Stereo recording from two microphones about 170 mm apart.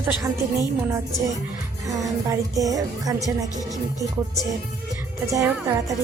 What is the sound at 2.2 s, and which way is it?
Speech, 20° right (ahead or behind).